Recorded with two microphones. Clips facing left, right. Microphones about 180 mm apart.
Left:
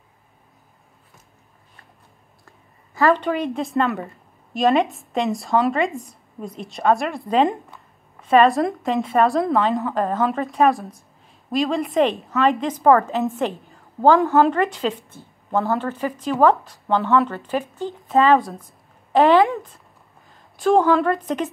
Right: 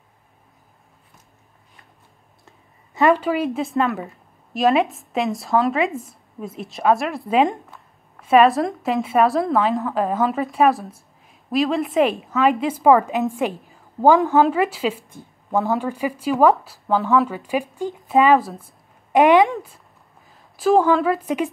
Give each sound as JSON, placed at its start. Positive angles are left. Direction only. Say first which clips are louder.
{"t": 2.4, "sound": "clicking", "louder": "right 1 dB", "side_deg": -20}
{"t": 3.2, "sound": "a woman's voice", "louder": "right 1 dB", "side_deg": -5}
{"t": 15.0, "sound": "a sound", "louder": "right 1 dB", "side_deg": -15}
{"t": 15.8, "sound": "a woman's voice", "louder": "right 1 dB", "side_deg": -10}
{"t": 19.1, "sound": "speech", "louder": "right 1 dB", "side_deg": -15}
{"t": 19.4, "sound": "a woman's voice", "louder": "even", "side_deg": -5}